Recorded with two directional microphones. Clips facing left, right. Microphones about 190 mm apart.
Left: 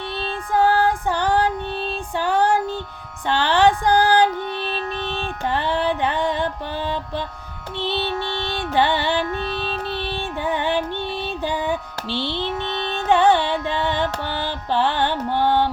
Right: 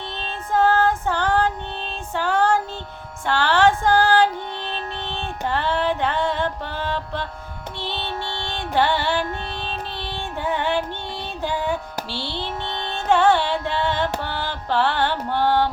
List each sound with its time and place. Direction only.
0.2 s music: 15° left (ahead or behind)
5.5 s music: 15° left (ahead or behind)
12.2 s mantra: 15° right (ahead or behind)
12.6 s carnatic music: 15° left (ahead or behind)